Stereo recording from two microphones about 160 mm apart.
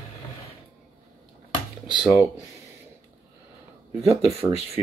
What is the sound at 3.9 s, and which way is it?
Speech, 35° right (ahead or behind).